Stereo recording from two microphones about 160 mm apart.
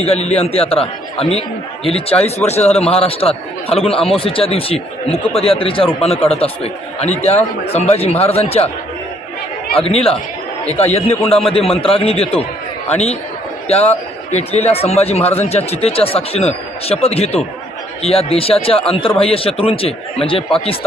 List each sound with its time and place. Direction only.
0.0 s speech: 40° left (ahead or behind)
9.7 s speech: 35° left (ahead or behind)
13.7 s a man's voice: 40° left (ahead or behind)